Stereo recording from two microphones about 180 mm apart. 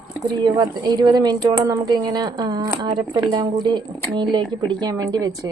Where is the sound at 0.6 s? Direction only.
25° right (ahead or behind).